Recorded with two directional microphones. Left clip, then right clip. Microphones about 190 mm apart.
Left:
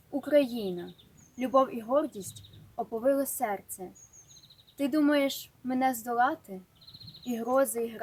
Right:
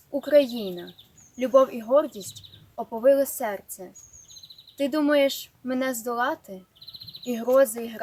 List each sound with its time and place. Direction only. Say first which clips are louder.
0.1 s a woman's voice: right 6 dB; centre (ahead or behind)